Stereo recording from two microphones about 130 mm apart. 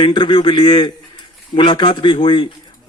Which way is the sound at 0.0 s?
35° left (ahead or behind).